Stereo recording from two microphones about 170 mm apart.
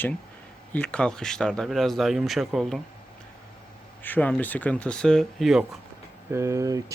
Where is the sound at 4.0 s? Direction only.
10° left (ahead or behind).